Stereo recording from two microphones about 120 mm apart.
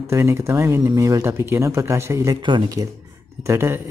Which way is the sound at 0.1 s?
20° right (ahead or behind).